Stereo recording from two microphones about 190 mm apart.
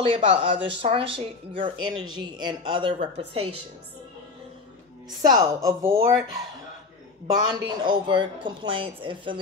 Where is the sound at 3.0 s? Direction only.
55° right (ahead or behind).